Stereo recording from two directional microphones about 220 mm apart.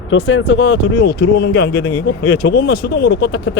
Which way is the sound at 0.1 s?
55° left (ahead or behind).